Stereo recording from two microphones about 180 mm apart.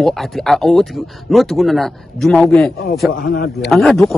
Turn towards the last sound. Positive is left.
turn(degrees=0)  # may be behind; listen again after turning